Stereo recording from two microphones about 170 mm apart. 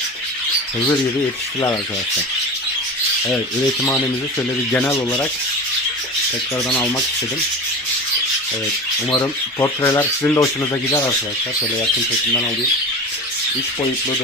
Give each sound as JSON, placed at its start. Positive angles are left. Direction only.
{"t": 4.7, "sound": "rub", "side_deg": 15}
{"t": 6.7, "sound": "rub", "side_deg": 5}
{"t": 9.0, "sound": "rub", "side_deg": 20}